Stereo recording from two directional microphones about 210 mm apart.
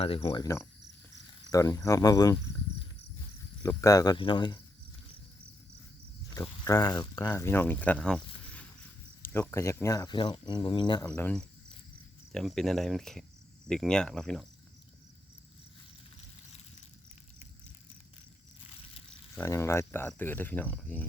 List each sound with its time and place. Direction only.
0.0 s speech: 25° left (ahead or behind)
3.6 s speech: 15° left (ahead or behind)
6.3 s speech: 15° left (ahead or behind)
9.2 s speech: 10° left (ahead or behind)
11.0 s speech: 5° left (ahead or behind)
19.3 s speech: 15° left (ahead or behind)